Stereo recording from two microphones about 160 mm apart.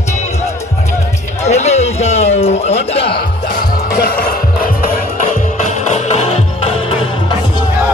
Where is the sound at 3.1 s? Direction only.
70° left (ahead or behind).